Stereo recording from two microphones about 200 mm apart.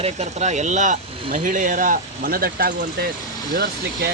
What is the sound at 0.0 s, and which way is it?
A man's voice, 35° right (ahead or behind).